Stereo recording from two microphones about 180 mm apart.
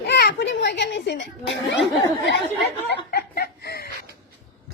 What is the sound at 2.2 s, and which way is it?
Chuckle, 75° left (ahead or behind).